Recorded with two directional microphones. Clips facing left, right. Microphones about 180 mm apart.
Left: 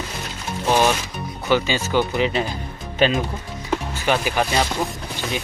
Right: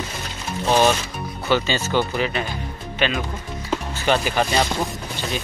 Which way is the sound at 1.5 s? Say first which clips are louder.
Left 1 dB; 10° left (ahead or behind).